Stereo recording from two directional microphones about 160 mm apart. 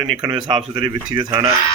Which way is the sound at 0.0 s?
25° right (ahead or behind).